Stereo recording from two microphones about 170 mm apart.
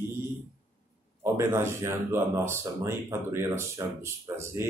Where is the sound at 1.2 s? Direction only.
15° right (ahead or behind).